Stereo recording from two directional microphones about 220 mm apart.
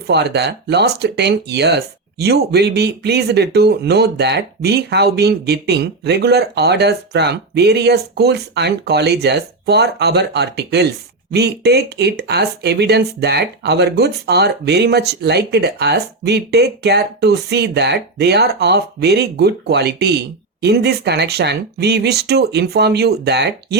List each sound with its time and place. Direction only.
0.1 s speech: 50° right (ahead or behind)